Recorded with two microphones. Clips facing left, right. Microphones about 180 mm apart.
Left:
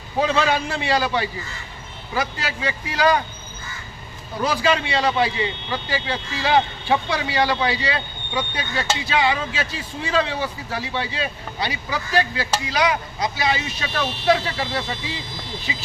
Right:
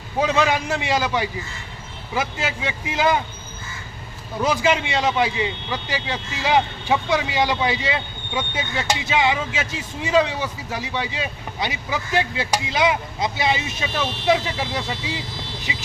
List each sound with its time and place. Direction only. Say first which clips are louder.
0.2 s speech: even; 15° right (ahead or behind)
4.4 s speech: right 1 dB; 20° right (ahead or behind)